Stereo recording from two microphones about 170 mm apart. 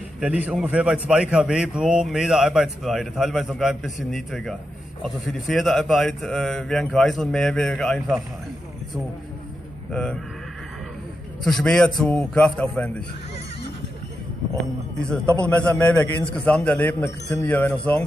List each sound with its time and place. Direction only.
0.2 s a man's voice: 5° right (ahead or behind)
11.4 s a man's voice: 5° left (ahead or behind)
15.4 s a man's voice: 5° left (ahead or behind)